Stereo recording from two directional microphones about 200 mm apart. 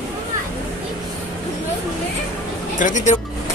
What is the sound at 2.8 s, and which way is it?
Music, 40° left (ahead or behind).